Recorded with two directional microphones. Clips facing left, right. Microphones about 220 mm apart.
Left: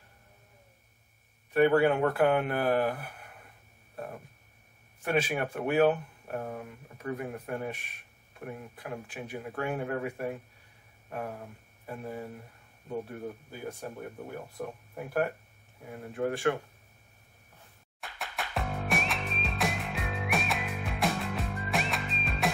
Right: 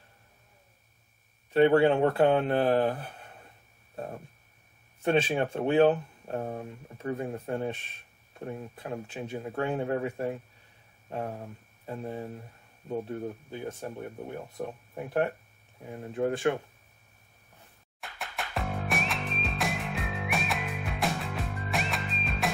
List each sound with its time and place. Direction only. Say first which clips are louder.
1.5 s speech: right 2 dB; 25° right (ahead or behind)
5.0 s speech: right 4 dB; 25° right (ahead or behind)
13.5 s speech: right 3 dB; 20° right (ahead or behind)
15.9 s speech: right 2 dB; 20° right (ahead or behind)
18.0 s music: even; centre (ahead or behind)